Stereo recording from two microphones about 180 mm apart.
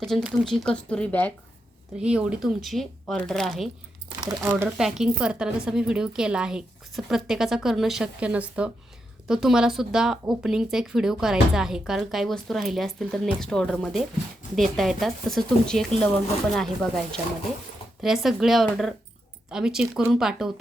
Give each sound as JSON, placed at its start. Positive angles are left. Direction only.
{"t": 0.1, "sound": "speech", "side_deg": 0}
{"t": 2.0, "sound": "speech", "side_deg": -5}
{"t": 4.2, "sound": "speech", "side_deg": -15}
{"t": 4.8, "sound": "speech", "side_deg": 0}